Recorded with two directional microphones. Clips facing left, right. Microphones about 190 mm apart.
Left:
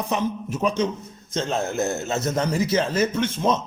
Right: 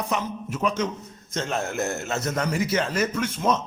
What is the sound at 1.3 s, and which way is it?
A man's voice, 30° left (ahead or behind).